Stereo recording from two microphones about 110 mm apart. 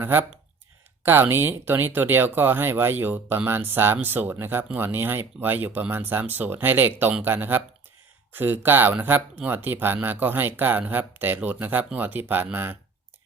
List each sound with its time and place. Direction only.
0.0 s speech: 20° right (ahead or behind)